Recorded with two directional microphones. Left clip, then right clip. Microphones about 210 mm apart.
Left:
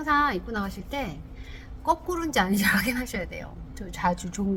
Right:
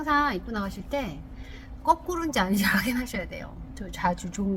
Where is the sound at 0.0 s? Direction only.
5° right (ahead or behind).